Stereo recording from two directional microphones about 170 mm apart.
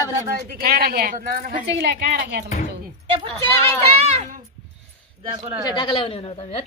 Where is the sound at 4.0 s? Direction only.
35° right (ahead or behind).